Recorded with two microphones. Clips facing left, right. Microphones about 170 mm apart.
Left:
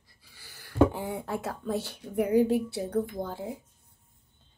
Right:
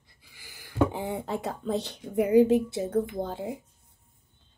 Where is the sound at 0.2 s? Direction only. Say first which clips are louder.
Right 2 dB; 15° right (ahead or behind).